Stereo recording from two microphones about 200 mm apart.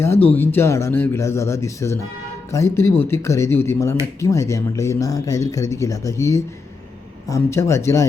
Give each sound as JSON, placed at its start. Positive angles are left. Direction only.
{"t": 0.0, "sound": "speech", "side_deg": 10}